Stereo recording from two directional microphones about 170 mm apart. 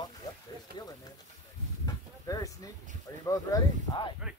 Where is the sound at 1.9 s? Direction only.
20° left (ahead or behind).